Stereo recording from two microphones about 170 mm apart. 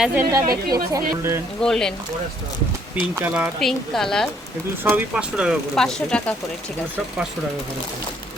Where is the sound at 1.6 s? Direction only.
5° left (ahead or behind).